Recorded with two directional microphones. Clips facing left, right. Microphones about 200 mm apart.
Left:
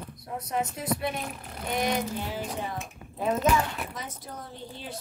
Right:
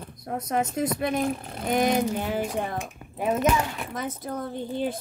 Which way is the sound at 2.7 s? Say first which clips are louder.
Right 4 dB; 15° right (ahead or behind).